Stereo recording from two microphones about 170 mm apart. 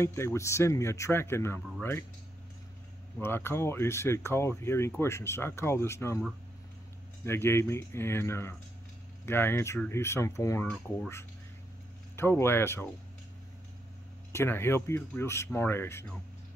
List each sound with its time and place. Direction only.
0.0 s speech: 15° left (ahead or behind)
3.2 s speech: 15° left (ahead or behind)
7.2 s speech: 15° left (ahead or behind)
12.2 s speech: 15° left (ahead or behind)
14.3 s speech: 15° left (ahead or behind)